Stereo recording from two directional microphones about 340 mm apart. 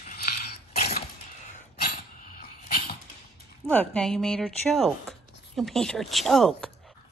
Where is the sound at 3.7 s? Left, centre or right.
Centre.